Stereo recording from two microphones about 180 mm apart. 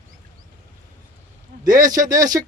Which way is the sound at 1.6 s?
20° right (ahead or behind).